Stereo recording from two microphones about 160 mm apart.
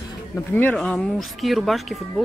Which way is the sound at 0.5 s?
10° left (ahead or behind).